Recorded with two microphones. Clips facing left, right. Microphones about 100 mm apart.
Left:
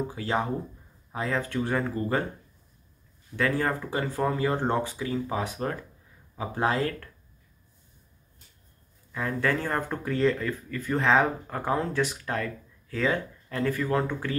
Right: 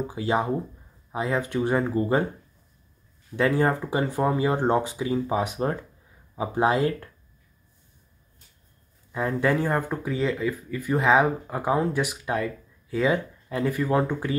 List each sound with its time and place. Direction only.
0.1 s speech: 15° right (ahead or behind)
3.3 s speech: 20° right (ahead or behind)
9.1 s speech: 20° right (ahead or behind)